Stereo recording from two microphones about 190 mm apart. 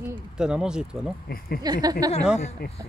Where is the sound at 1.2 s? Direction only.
55° left (ahead or behind).